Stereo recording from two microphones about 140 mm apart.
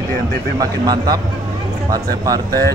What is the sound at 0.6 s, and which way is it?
Speech, 25° right (ahead or behind).